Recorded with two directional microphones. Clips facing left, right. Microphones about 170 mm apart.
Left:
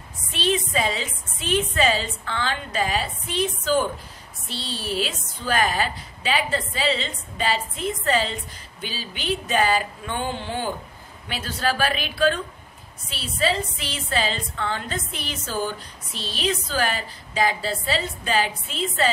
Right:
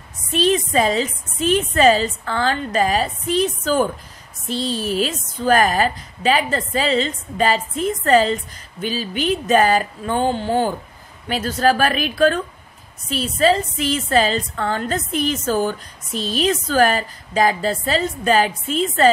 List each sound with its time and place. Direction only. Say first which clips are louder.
0.3 s a woman's voice: right 6 dB; 40° right (ahead or behind)